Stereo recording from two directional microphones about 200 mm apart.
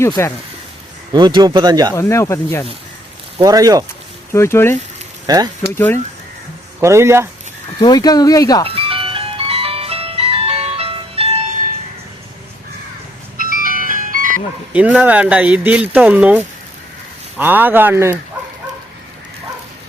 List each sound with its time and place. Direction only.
0.0 s speech: 15° left (ahead or behind)
1.1 s speech: 20° right (ahead or behind)
1.9 s speech: 15° left (ahead or behind)
3.3 s speech: 20° right (ahead or behind)
4.3 s speech: 15° left (ahead or behind)
5.2 s speech: 20° right (ahead or behind)
5.7 s speech: 10° left (ahead or behind)
6.7 s speech: 15° right (ahead or behind)
7.8 s speech: 20° left (ahead or behind)
8.6 s ice cream truck: 30° right (ahead or behind)
13.6 s ice cream truck: 45° right (ahead or behind)
14.7 s speech: 5° right (ahead or behind)